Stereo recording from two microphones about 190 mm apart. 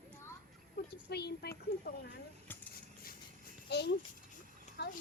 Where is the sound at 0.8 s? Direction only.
60° left (ahead or behind).